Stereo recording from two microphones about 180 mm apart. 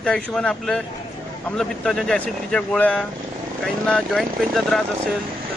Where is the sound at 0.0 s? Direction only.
5° left (ahead or behind).